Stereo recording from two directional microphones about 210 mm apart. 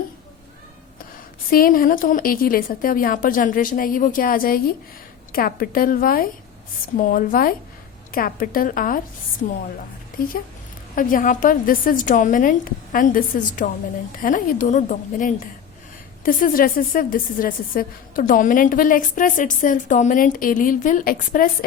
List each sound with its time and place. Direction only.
1.5 s a woman's voice: 45° left (ahead or behind)
10.9 s a woman's voice: 40° left (ahead or behind)